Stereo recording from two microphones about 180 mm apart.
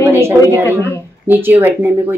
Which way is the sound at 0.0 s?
15° right (ahead or behind).